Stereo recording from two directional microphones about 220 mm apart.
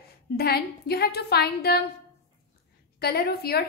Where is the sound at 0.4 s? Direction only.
45° left (ahead or behind).